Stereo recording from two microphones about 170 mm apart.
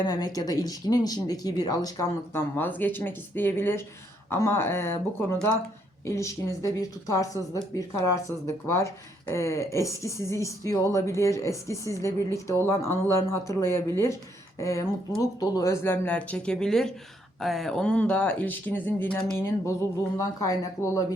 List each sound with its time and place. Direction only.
0.0 s speech: 25° left (ahead or behind)
6.1 s speech: 15° left (ahead or behind)